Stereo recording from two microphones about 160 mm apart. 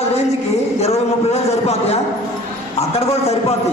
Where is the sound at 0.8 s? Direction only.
40° left (ahead or behind).